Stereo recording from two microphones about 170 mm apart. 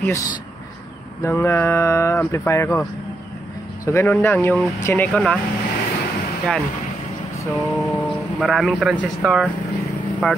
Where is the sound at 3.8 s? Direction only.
15° left (ahead or behind).